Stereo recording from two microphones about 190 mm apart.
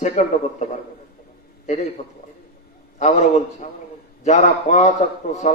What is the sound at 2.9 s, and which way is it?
A man's voice, 40° left (ahead or behind).